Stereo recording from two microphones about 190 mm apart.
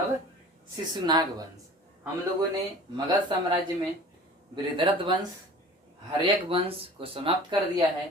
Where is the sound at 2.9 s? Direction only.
20° right (ahead or behind).